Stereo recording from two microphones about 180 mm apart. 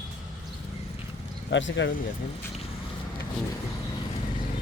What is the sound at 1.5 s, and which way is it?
Speech, 90° left.